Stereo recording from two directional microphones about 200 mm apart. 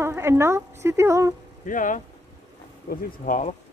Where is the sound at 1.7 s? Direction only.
40° left (ahead or behind).